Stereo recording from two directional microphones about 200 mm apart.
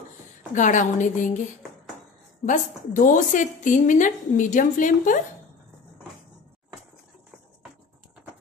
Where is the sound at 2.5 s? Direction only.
40° left (ahead or behind).